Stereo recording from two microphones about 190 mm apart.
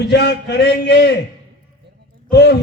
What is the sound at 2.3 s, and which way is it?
Speech, 60° left (ahead or behind).